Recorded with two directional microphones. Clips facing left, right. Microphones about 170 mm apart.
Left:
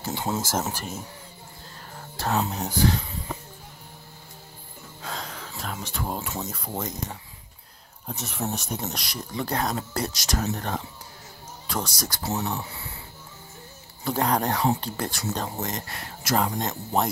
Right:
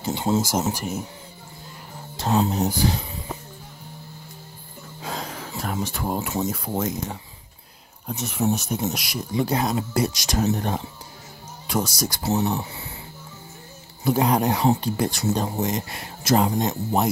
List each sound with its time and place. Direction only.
0.0 s speech: 20° right (ahead or behind)
0.4 s speech: 10° right (ahead or behind)
2.1 s speech: 20° right (ahead or behind)
5.0 s a sound: 10° right (ahead or behind)
6.4 s speech: 5° right (ahead or behind)
12.2 s speech: 25° right (ahead or behind)
14.0 s speech: 10° right (ahead or behind)
16.5 s speech: 10° right (ahead or behind)